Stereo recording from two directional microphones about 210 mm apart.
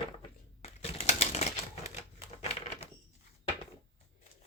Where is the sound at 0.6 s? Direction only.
30° left (ahead or behind).